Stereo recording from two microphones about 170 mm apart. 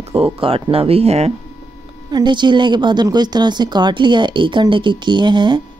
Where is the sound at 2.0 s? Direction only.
25° right (ahead or behind).